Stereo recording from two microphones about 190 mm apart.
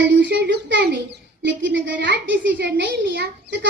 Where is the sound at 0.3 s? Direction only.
65° right (ahead or behind).